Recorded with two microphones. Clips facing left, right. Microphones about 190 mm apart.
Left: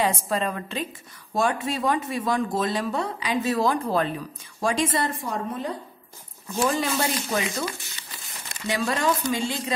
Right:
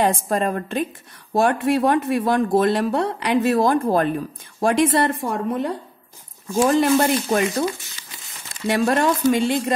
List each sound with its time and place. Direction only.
0.0 s a woman's voice: 50° right (ahead or behind)
1.3 s speech: 60° right (ahead or behind)
8.6 s speech: 55° right (ahead or behind)